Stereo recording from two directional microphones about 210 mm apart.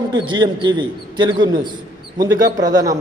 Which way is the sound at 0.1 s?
20° right (ahead or behind).